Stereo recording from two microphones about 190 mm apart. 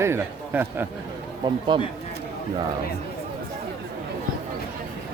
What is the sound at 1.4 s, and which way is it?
Speech, 25° right (ahead or behind).